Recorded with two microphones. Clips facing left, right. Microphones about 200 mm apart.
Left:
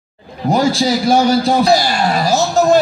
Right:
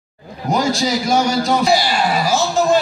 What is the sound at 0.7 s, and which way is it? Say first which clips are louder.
A man's voice: left 4 dB; 30° left (ahead or behind).